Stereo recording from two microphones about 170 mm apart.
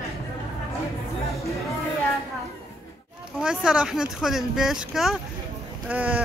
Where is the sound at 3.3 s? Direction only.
5° right (ahead or behind).